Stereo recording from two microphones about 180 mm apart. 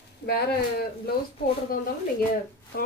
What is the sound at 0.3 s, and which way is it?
Speech, 60° left (ahead or behind).